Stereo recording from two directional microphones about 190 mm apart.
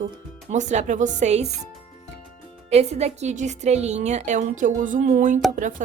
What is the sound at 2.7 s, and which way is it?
A woman's voice, 35° right (ahead or behind).